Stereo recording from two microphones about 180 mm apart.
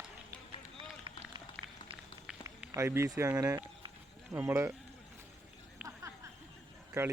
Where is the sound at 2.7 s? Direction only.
15° right (ahead or behind).